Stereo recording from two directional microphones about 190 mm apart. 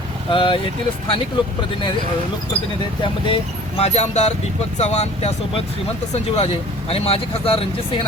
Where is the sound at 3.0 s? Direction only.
30° left (ahead or behind).